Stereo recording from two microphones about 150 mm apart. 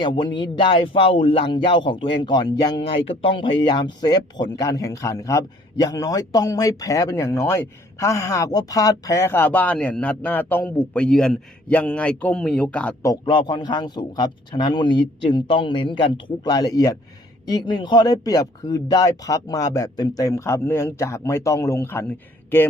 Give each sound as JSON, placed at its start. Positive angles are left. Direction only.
{"t": 0.0, "sound": "a man's voice", "side_deg": 30}
{"t": 13.2, "sound": "a man's voice", "side_deg": 30}